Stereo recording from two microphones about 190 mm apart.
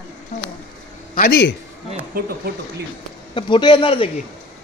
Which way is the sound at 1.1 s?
50° left (ahead or behind).